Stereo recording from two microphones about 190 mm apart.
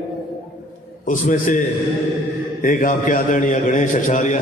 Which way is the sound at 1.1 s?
45° left (ahead or behind).